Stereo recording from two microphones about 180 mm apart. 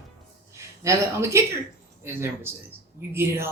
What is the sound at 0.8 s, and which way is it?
Speech, 15° right (ahead or behind).